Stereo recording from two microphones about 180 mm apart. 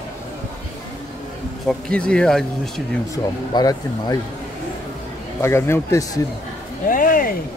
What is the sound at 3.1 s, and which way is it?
A man's voice, 20° left (ahead or behind).